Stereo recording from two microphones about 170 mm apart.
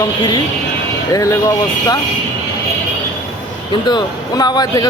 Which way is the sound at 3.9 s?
25° left (ahead or behind).